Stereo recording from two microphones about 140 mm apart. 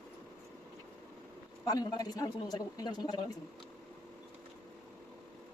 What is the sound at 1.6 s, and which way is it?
A man's voice, 25° left (ahead or behind).